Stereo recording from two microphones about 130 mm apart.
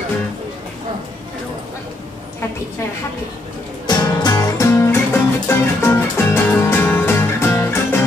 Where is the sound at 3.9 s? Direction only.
30° left (ahead or behind).